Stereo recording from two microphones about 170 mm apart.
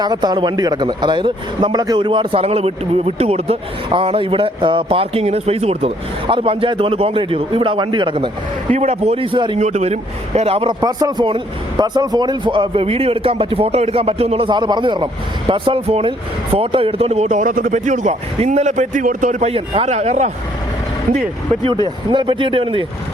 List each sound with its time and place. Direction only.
0.0 s a man's voice: 25° right (ahead or behind)
8.7 s a man's voice: 40° right (ahead or behind)
9.6 s a man's voice: 40° right (ahead or behind)
21.6 s speech: 30° right (ahead or behind)